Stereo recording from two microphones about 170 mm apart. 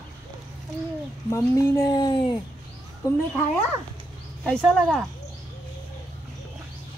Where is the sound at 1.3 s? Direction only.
20° left (ahead or behind).